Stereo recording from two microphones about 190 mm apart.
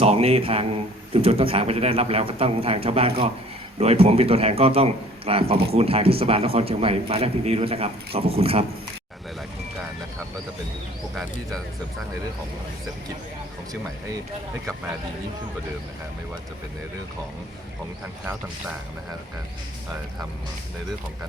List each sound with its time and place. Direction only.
0.0 s mantra: 35° right (ahead or behind)
1.1 s a man's voice: 30° right (ahead or behind)